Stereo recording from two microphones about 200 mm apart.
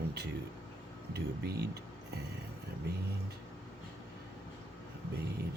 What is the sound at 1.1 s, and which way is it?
Speech, 55° right (ahead or behind).